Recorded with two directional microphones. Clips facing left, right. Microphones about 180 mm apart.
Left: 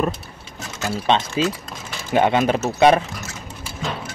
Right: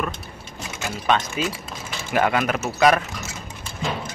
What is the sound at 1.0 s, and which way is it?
Speech, 25° left (ahead or behind).